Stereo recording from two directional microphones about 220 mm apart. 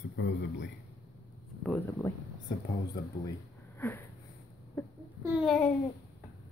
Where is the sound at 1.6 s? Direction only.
5° left (ahead or behind).